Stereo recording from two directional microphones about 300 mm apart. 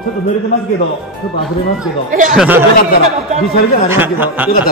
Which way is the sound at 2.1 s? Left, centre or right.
Right.